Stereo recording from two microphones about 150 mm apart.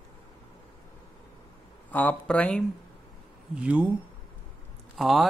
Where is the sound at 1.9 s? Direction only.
10° left (ahead or behind).